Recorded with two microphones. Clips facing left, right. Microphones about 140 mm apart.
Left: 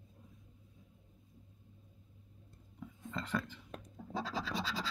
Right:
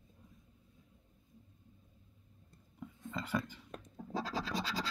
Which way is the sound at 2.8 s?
Centre (ahead or behind).